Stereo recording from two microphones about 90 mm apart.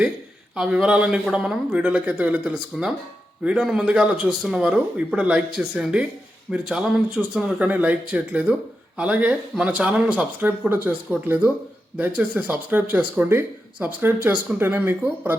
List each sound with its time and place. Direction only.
0.5 s speech: 10° right (ahead or behind)